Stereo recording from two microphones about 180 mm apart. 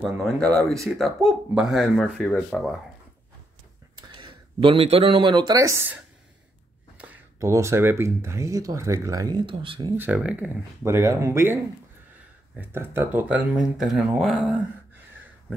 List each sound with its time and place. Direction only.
0.0 s speech: 5° left (ahead or behind)
4.1 s speech: 30° right (ahead or behind)
7.0 s speech: 10° right (ahead or behind)
9.9 s speech: 10° right (ahead or behind)